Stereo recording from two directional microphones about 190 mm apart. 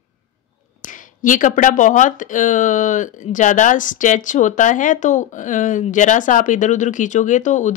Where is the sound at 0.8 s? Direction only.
45° left (ahead or behind).